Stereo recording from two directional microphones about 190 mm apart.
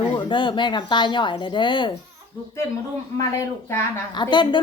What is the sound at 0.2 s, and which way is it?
A woman's voice, 25° left (ahead or behind).